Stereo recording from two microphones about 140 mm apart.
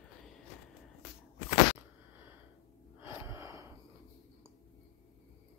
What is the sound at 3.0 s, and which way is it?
Gasp, 15° right (ahead or behind).